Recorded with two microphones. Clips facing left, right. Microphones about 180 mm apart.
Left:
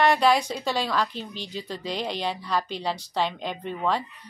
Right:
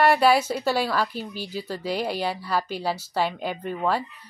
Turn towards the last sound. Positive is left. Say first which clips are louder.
# right 1 dB
turn(degrees=-5)  # may be behind; listen again after turning